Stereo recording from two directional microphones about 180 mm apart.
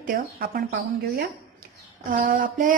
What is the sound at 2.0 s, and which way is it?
Speech, 50° right (ahead or behind).